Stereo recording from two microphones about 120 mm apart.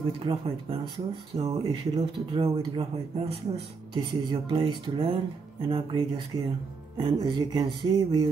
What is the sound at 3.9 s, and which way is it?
Speech, 40° right (ahead or behind).